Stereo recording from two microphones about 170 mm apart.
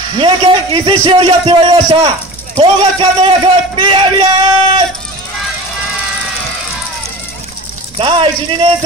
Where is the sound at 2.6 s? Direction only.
30° right (ahead or behind).